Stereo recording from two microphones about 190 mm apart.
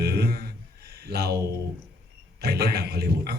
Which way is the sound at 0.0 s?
55° right (ahead or behind).